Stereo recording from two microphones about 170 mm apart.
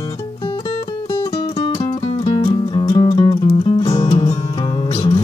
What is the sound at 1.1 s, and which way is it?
Music, 25° left (ahead or behind).